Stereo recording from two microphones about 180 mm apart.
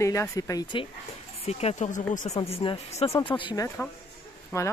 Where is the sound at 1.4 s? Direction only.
35° left (ahead or behind).